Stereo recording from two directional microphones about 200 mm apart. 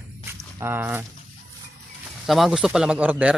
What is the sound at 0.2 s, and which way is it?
Walk, 10° right (ahead or behind).